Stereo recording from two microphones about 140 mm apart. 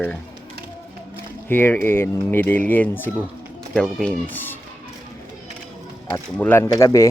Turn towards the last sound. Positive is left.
turn(degrees=20)  # may be behind; listen again after turning